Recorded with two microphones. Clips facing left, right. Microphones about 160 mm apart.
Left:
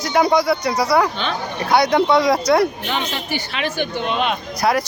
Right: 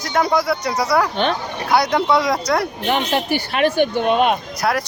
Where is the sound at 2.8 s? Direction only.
55° right (ahead or behind).